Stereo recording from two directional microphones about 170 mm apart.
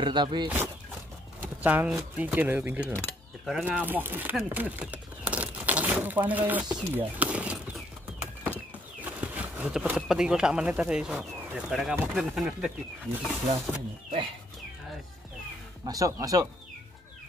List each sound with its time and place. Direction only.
0.0 s speech: 25° right (ahead or behind)
1.4 s speech: 10° right (ahead or behind)
15.8 s speech: 20° right (ahead or behind)